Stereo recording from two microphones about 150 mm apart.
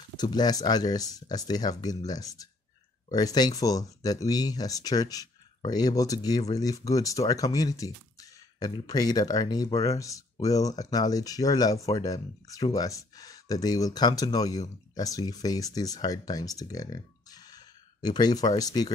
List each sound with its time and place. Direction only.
0.2 s speech: 25° left (ahead or behind)